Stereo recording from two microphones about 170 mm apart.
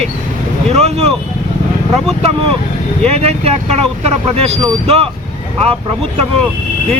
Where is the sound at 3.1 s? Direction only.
35° right (ahead or behind).